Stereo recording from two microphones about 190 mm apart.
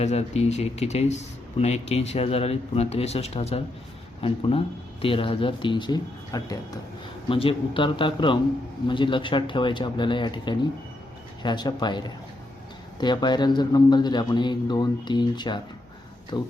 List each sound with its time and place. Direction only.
0.0 s a man's voice: 35° left (ahead or behind)